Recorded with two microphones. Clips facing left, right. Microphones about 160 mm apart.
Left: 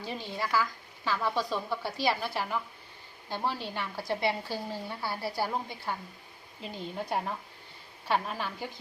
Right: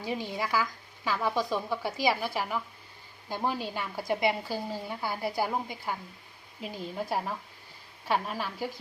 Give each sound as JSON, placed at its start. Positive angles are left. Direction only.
{"t": 0.0, "sound": "a woman's voice", "side_deg": -10}